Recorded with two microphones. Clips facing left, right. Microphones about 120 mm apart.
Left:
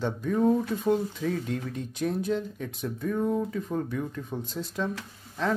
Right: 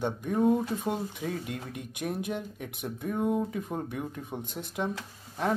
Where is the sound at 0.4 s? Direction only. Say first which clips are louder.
Left 1 dB; 15° right (ahead or behind).